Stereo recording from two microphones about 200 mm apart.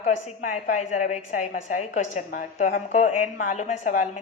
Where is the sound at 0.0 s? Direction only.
40° left (ahead or behind).